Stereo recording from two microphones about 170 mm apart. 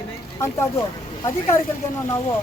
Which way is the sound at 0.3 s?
15° left (ahead or behind).